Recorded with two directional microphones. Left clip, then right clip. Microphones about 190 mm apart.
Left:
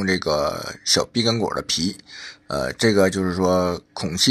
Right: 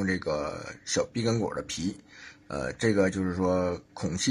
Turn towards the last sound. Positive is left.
turn(degrees=30)  # may be behind; listen again after turning